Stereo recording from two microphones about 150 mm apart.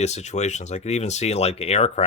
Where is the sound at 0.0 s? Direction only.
50° left (ahead or behind).